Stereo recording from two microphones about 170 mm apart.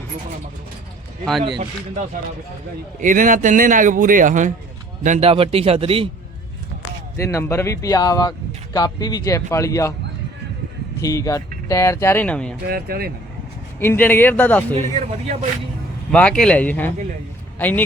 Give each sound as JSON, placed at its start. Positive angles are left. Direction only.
{"t": 3.0, "sound": "a man's voice", "side_deg": -50}
{"t": 5.3, "sound": "a man's voice", "side_deg": -35}
{"t": 7.2, "sound": "speech", "side_deg": 15}
{"t": 11.0, "sound": "speech", "side_deg": 20}
{"t": 12.6, "sound": "speech", "side_deg": -65}
{"t": 13.7, "sound": "speech", "side_deg": 10}
{"t": 14.8, "sound": "a man's voice", "side_deg": -45}
{"t": 16.1, "sound": "speech", "side_deg": 5}